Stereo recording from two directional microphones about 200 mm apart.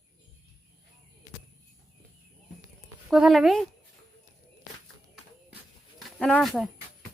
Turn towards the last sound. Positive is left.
turn(degrees=0)  # may be behind; listen again after turning